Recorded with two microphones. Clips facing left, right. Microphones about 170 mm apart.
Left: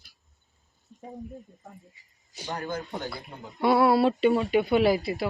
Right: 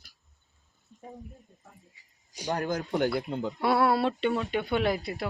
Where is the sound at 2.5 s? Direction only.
75° right (ahead or behind).